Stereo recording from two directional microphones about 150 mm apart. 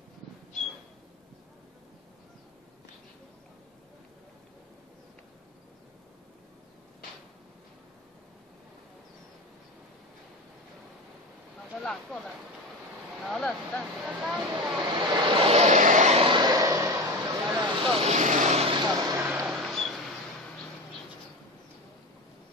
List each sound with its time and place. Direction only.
11.8 s speech: 5° left (ahead or behind)
14.8 s vehicle: 30° right (ahead or behind); by 16.3 s 50° right (ahead or behind)
16.3 s a sound: 30° right (ahead or behind)
17.6 s vehicle: 30° right (ahead or behind)
18.9 s vehicle: 25° right (ahead or behind)
19.2 s a sound: 5° right (ahead or behind)